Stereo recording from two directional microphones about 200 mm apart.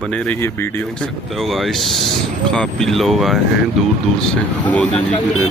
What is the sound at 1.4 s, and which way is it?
Speech, centre (ahead or behind).